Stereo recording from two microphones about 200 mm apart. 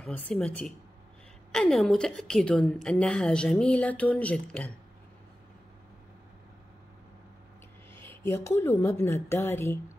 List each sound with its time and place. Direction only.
0.0 s a woman's voice: 5° left (ahead or behind)
7.9 s a woman's voice: 10° left (ahead or behind)